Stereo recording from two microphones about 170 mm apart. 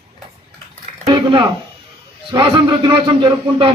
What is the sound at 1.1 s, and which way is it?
A man's voice, 30° right (ahead or behind).